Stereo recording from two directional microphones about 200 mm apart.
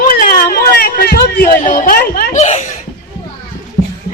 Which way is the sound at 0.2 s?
50° left (ahead or behind).